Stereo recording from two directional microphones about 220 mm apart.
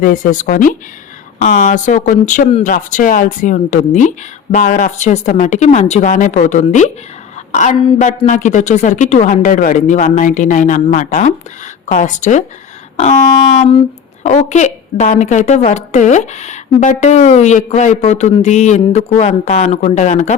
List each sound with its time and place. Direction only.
0.0 s a woman's voice: 35° left (ahead or behind)
13.6 s a sound: 25° left (ahead or behind)
14.3 s a woman's voice: 30° left (ahead or behind)